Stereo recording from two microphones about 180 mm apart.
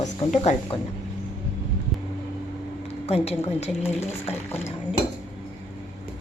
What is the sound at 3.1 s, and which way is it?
Speech, 35° left (ahead or behind).